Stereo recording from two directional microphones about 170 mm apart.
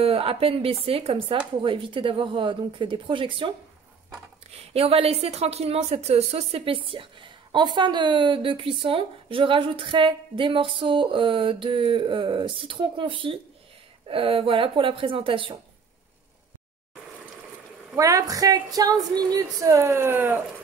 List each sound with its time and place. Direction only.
0.0 s speech: 35° right (ahead or behind)
4.6 s speech: 35° right (ahead or behind)
17.9 s speech: 20° right (ahead or behind)